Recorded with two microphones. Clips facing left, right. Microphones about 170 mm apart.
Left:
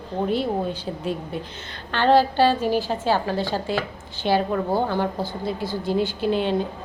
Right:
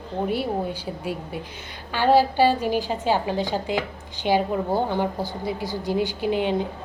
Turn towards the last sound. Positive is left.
turn(degrees=-15)  # may be behind; listen again after turning